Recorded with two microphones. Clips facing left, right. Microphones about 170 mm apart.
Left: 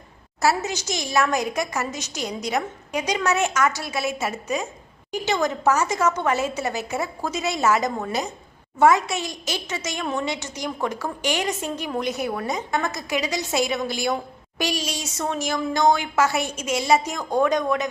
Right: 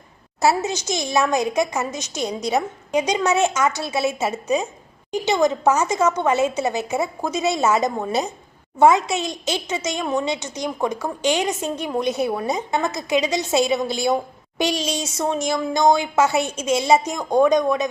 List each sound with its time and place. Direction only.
0.4 s a woman's voice: 20° right (ahead or behind)